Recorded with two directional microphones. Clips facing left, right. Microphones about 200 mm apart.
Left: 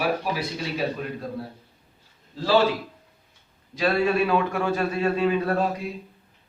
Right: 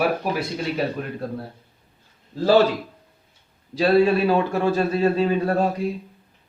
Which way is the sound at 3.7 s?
35° right (ahead or behind).